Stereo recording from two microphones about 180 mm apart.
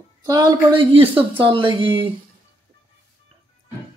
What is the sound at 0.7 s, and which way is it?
Speech, 30° right (ahead or behind).